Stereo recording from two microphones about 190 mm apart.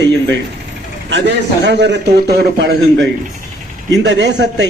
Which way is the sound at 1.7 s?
65° right (ahead or behind).